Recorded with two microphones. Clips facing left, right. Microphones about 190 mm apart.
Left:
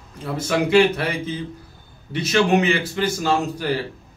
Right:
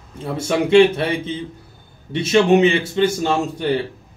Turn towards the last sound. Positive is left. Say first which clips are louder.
# right 2 dB
turn(degrees=-25)  # may be behind; listen again after turning